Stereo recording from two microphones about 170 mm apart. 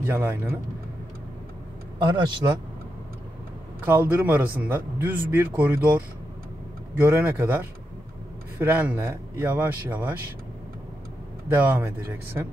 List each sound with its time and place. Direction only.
0.0 s speech: 10° right (ahead or behind)
2.0 s speech: 25° right (ahead or behind)
3.8 s speech: 10° right (ahead or behind)
11.4 s speech: 10° right (ahead or behind)